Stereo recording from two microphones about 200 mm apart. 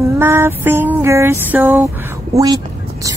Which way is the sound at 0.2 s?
10° right (ahead or behind).